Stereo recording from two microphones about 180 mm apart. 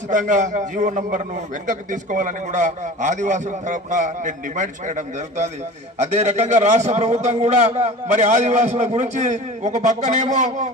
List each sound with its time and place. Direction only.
0.1 s a man's voice: 45° right (ahead or behind)